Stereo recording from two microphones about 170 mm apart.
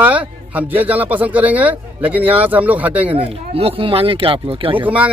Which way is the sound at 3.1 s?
35° right (ahead or behind).